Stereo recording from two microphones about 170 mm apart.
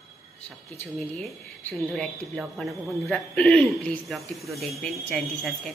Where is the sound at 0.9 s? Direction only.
5° left (ahead or behind).